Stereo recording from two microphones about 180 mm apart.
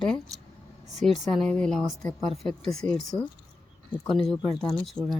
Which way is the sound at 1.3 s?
5° left (ahead or behind).